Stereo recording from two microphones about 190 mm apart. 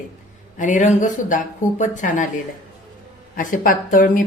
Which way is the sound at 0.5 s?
40° left (ahead or behind).